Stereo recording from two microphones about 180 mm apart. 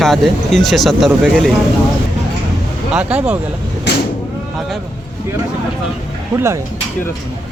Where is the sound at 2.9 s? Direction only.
5° right (ahead or behind).